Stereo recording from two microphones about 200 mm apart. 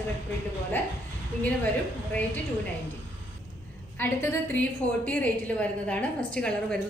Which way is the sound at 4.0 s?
10° left (ahead or behind).